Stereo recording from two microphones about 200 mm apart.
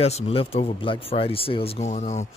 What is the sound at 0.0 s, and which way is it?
Speech, 30° left (ahead or behind).